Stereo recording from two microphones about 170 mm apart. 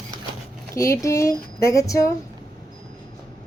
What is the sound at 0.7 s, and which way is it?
Speech, 20° left (ahead or behind).